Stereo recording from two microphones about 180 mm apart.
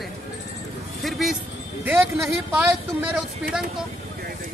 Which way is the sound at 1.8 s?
10° right (ahead or behind).